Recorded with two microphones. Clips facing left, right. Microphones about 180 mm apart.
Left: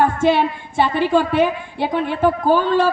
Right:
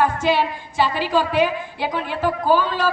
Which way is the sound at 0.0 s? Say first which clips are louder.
Left 3 dB; 55° left (ahead or behind).